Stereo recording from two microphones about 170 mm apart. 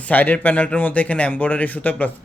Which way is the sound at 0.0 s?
10° left (ahead or behind).